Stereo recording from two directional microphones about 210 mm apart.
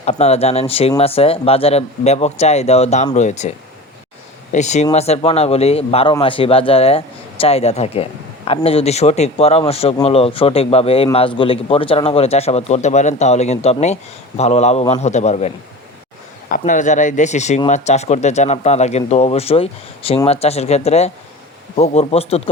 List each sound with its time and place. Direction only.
0.0 s speech: 30° left (ahead or behind)
4.5 s speech: 35° left (ahead or behind)